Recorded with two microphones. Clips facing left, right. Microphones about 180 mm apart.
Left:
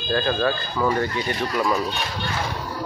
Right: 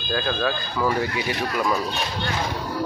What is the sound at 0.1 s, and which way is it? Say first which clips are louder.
Speech: left 3 dB; centre (ahead or behind).